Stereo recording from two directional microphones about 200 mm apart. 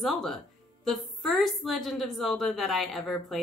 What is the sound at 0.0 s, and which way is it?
Speech, centre (ahead or behind).